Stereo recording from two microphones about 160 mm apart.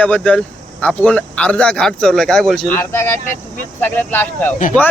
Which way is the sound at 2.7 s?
15° left (ahead or behind).